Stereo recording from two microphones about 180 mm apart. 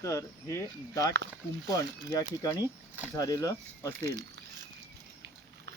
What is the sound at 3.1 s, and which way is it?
Speech, 20° left (ahead or behind).